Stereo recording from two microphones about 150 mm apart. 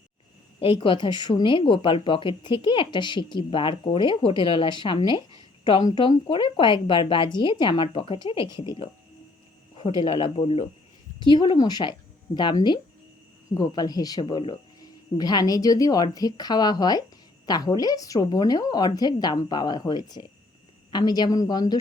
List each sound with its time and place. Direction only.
0.6 s speech: 35° left (ahead or behind)
10.0 s speech: 35° left (ahead or behind)
11.3 s speech: 30° left (ahead or behind)